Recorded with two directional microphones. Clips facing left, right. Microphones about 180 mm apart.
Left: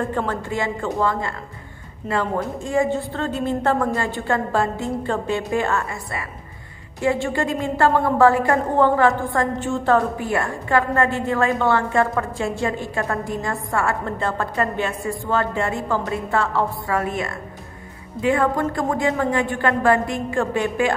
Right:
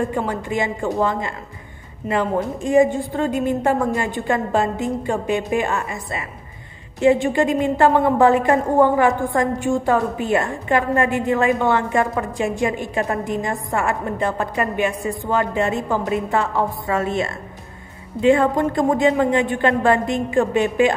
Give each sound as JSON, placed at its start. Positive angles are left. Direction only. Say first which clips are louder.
{"t": 0.0, "sound": "a woman's voice", "louder": "right 1 dB", "side_deg": -15}